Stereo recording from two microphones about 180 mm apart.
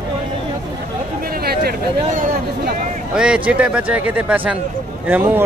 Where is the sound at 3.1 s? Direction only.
5° right (ahead or behind).